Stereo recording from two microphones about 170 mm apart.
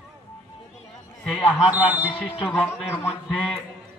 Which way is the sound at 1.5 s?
10° right (ahead or behind).